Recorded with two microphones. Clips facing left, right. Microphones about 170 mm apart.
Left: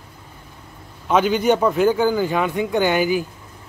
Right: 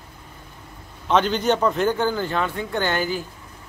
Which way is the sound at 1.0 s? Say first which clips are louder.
Left 3 dB; 10° left (ahead or behind).